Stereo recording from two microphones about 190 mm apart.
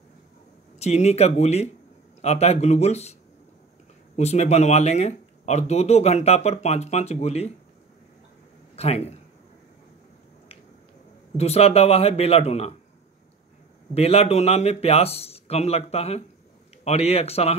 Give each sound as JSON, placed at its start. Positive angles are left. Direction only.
{"t": 0.7, "sound": "speech", "side_deg": 35}
{"t": 4.2, "sound": "speech", "side_deg": 35}
{"t": 8.7, "sound": "speech", "side_deg": 35}
{"t": 11.3, "sound": "speech", "side_deg": 35}
{"t": 13.9, "sound": "speech", "side_deg": 30}